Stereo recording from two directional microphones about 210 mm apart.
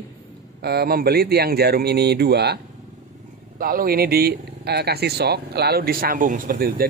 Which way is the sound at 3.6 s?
45° right (ahead or behind).